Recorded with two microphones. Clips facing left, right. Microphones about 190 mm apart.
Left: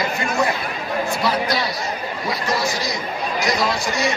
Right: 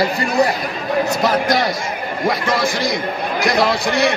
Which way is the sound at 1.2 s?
45° right (ahead or behind).